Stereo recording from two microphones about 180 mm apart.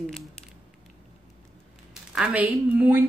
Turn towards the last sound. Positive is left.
turn(degrees=-10)  # may be behind; listen again after turning